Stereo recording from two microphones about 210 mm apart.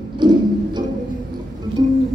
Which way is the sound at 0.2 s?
20° right (ahead or behind).